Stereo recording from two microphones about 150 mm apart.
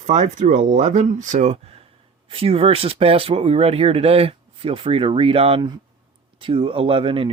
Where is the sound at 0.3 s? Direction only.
50° right (ahead or behind).